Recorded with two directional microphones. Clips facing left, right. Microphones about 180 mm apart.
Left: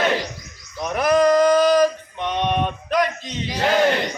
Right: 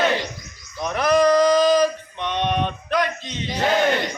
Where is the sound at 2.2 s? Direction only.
5° left (ahead or behind).